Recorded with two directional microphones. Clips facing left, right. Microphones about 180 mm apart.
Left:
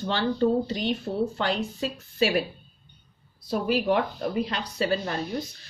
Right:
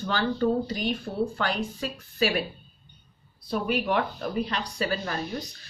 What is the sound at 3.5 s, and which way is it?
Speech, 30° left (ahead or behind).